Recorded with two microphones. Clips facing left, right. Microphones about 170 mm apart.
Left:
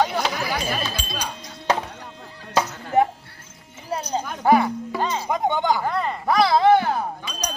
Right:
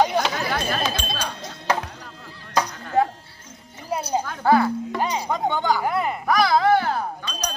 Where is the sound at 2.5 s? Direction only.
25° left (ahead or behind).